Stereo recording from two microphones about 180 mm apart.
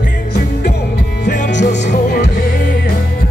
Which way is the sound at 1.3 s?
45° left (ahead or behind).